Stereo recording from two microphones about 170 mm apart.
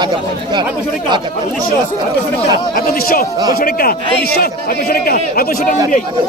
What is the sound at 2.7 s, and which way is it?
A man's voice, 60° left (ahead or behind).